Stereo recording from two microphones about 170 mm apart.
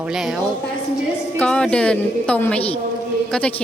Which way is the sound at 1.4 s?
5° left (ahead or behind).